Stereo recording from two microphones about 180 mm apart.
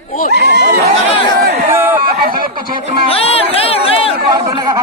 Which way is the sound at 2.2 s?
50° right (ahead or behind).